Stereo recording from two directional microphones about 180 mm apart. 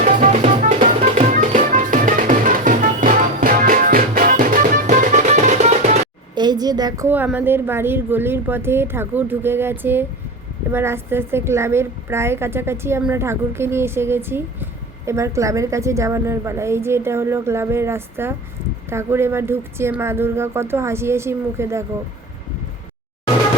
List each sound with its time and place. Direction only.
0.0 s music: 40° right (ahead or behind)
6.3 s a woman's voice: 25° right (ahead or behind)